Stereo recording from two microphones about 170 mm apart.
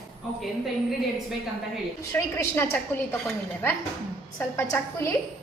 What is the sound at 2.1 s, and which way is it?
A woman's voice, 15° left (ahead or behind).